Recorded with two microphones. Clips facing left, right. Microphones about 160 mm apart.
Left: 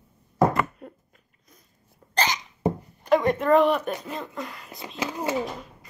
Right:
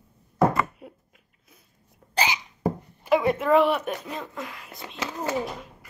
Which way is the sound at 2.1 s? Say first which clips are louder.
Even; 10° right (ahead or behind).